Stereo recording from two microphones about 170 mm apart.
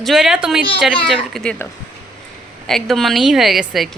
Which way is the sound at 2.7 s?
Centre (ahead or behind).